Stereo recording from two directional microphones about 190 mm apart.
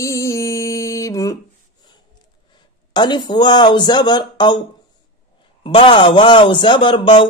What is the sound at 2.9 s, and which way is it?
Speech, 25° left (ahead or behind).